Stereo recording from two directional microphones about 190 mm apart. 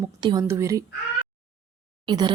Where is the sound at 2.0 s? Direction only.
25° right (ahead or behind).